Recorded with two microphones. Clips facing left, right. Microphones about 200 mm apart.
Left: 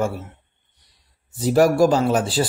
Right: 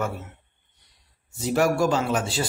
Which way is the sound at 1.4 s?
35° left (ahead or behind).